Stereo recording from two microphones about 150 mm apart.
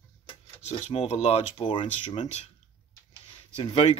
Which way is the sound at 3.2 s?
40° left (ahead or behind).